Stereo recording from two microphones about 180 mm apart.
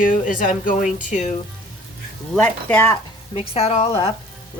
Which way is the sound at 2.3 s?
10° left (ahead or behind).